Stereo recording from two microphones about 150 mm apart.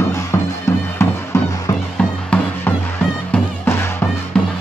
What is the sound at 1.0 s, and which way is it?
Music, 15° left (ahead or behind).